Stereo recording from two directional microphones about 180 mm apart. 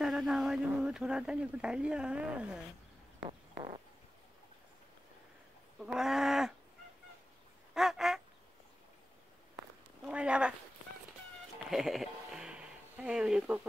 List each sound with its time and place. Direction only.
0.0 s speech: centre (ahead or behind)
3.3 s a sound: 30° right (ahead or behind)
5.8 s speech: 5° right (ahead or behind)
7.7 s goose: centre (ahead or behind)
10.0 s speech: 5° right (ahead or behind)
11.7 s a sound: centre (ahead or behind)